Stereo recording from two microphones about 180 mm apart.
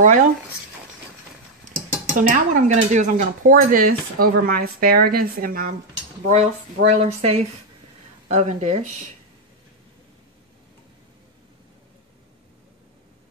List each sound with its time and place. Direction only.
0.0 s speech: 45° right (ahead or behind)
2.1 s speech: 45° right (ahead or behind)
6.2 s speech: 40° right (ahead or behind)